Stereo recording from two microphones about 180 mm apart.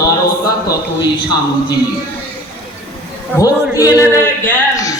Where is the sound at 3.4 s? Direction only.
20° left (ahead or behind).